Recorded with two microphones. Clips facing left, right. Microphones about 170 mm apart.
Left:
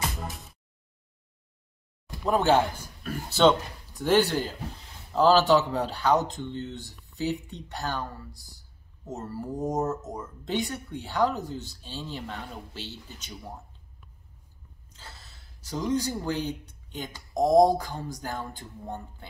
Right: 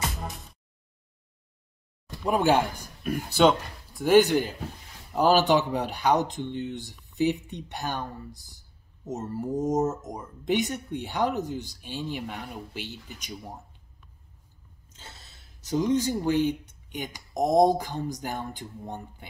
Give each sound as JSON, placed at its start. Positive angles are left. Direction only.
{"t": 0.0, "sound": "music", "side_deg": 0}
{"t": 2.2, "sound": "speech", "side_deg": -15}
{"t": 14.9, "sound": "speech", "side_deg": -20}